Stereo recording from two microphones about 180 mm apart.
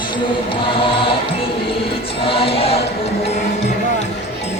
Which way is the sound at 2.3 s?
30° left (ahead or behind).